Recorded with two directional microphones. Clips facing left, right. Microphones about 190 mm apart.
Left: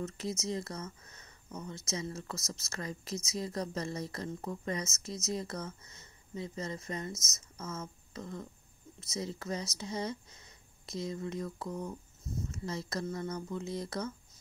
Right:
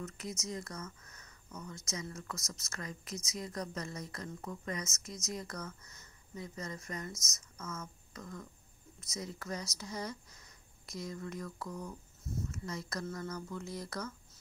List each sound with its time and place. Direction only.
0.0 s a woman's voice: 30° left (ahead or behind)